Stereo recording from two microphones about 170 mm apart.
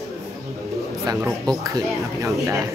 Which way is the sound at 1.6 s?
20° right (ahead or behind).